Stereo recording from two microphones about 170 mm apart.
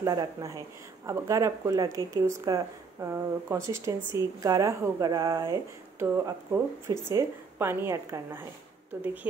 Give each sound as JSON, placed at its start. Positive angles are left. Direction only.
{"t": 0.0, "sound": "speech", "side_deg": -20}